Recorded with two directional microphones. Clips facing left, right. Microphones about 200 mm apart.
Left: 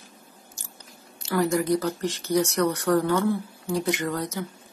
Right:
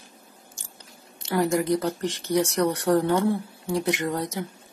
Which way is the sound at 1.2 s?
20° right (ahead or behind).